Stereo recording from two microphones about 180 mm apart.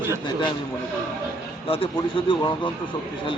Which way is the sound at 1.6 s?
30° left (ahead or behind).